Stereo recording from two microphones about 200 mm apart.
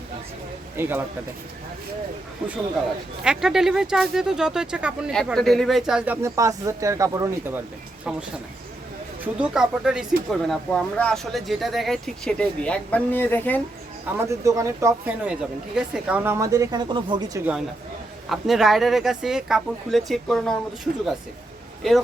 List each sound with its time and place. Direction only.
0.8 s speech: 10° right (ahead or behind)
3.2 s speech: centre (ahead or behind)
6.2 s speech: 15° right (ahead or behind)
9.2 s speech: 5° right (ahead or behind)
14.2 s speech: 15° right (ahead or behind)
18.3 s speech: centre (ahead or behind)